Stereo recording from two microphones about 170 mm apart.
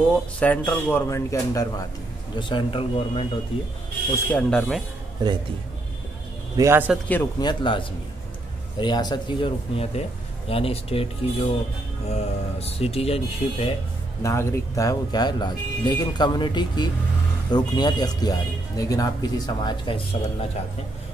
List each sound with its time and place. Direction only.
0.4 s speech: 10° left (ahead or behind)
2.3 s speech: 30° left (ahead or behind)
4.3 s speech: 5° left (ahead or behind)
5.2 s speech: 25° right (ahead or behind)
6.5 s a man's voice: 15° right (ahead or behind)
7.3 s speech: 25° left (ahead or behind)
14.2 s speech: 15° left (ahead or behind)